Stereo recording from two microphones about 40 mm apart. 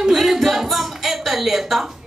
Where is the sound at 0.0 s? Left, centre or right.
Centre.